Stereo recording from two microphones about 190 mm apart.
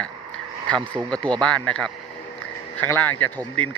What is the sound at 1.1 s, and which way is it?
Speech, 5° left (ahead or behind).